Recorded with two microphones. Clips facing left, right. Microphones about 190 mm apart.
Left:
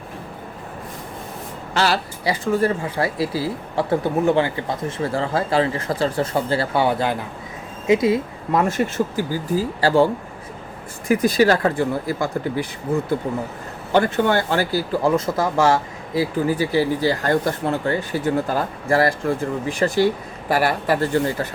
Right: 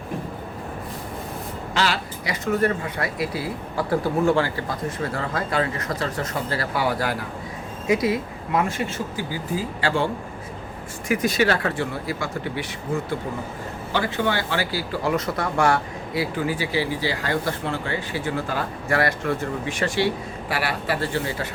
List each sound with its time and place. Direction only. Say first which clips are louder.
1.7 s speech: left 4 dB; 40° left (ahead or behind); by 8.2 s 25° left (ahead or behind)
8.5 s speech: left 5 dB; 45° left (ahead or behind)
11.1 s speech: left 5 dB; 35° left (ahead or behind)
13.9 s speech: left 6 dB; 50° left (ahead or behind)
15.1 s speech: left 4 dB; 25° left (ahead or behind)
16.5 s speech: left 5 dB; 45° left (ahead or behind)